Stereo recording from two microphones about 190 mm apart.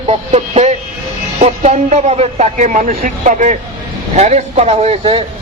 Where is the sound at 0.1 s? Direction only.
35° right (ahead or behind).